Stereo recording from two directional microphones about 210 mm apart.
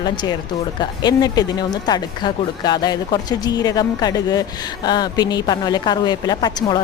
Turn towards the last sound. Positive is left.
turn(degrees=20)  # may be behind; listen again after turning